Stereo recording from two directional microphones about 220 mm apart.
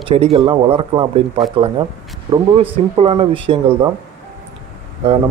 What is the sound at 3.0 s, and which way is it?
Speech, 25° right (ahead or behind).